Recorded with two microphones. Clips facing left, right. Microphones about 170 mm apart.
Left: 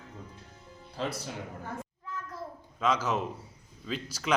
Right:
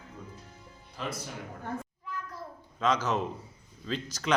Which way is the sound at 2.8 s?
5° left (ahead or behind).